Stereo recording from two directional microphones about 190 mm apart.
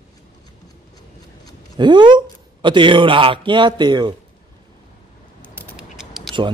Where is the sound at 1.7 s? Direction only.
25° right (ahead or behind).